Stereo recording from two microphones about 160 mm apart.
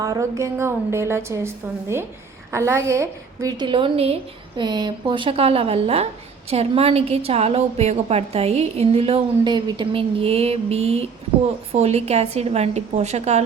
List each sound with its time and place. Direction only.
0.0 s a woman's voice: 20° right (ahead or behind); by 13.4 s 45° right (ahead or behind)